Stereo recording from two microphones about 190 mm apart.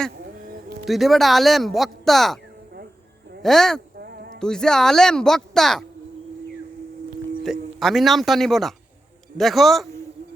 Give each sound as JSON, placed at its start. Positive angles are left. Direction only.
{"t": 0.9, "sound": "speech", "side_deg": 0}
{"t": 3.4, "sound": "speech", "side_deg": 0}
{"t": 3.9, "sound": "a sound", "side_deg": -55}
{"t": 4.4, "sound": "speech", "side_deg": 5}
{"t": 7.4, "sound": "speech", "side_deg": 0}